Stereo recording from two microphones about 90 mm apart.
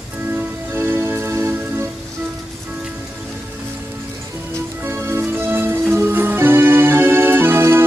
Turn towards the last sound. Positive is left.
turn(degrees=-25)  # may be behind; listen again after turning